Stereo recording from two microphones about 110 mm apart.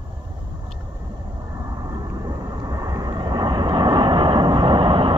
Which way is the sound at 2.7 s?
35° right (ahead or behind).